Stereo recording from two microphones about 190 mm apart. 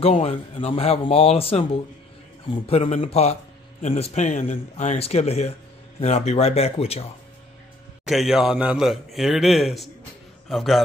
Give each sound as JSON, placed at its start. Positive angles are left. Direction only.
{"t": 0.0, "sound": "speech", "side_deg": 35}
{"t": 8.0, "sound": "a man's voice", "side_deg": 0}